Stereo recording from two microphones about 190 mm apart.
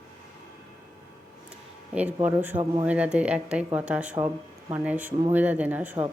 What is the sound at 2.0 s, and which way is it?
Speech, 10° right (ahead or behind).